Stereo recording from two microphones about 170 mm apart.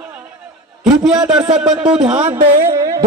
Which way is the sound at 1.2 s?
30° right (ahead or behind).